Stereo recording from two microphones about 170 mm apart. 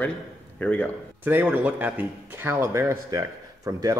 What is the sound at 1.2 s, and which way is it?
A man's voice, 10° right (ahead or behind).